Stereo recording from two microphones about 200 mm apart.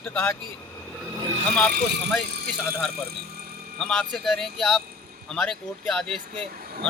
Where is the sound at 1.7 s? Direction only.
55° right (ahead or behind).